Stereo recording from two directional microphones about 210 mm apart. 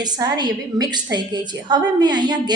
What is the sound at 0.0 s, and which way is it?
A woman's voice, 20° right (ahead or behind).